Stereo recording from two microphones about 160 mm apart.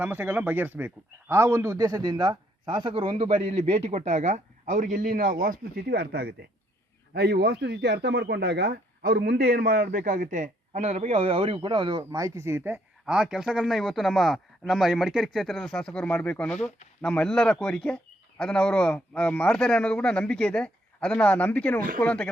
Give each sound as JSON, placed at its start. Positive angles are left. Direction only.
{"t": 0.0, "sound": "speech", "side_deg": -10}